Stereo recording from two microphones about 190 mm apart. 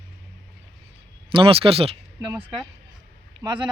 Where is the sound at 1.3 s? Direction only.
30° right (ahead or behind).